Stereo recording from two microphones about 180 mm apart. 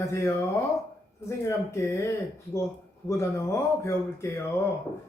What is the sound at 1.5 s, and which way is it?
Speech, 15° left (ahead or behind).